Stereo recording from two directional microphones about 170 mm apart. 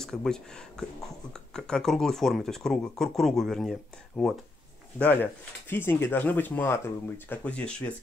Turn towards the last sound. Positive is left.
turn(degrees=5)  # may be behind; listen again after turning